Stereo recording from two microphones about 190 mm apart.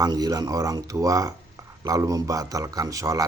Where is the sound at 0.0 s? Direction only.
20° right (ahead or behind).